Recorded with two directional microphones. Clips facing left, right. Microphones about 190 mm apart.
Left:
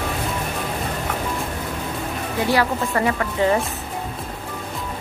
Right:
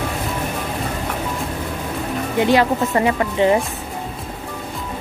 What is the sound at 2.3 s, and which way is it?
Speech, 20° right (ahead or behind).